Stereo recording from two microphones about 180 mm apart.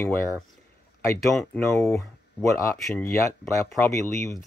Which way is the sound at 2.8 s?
Centre (ahead or behind).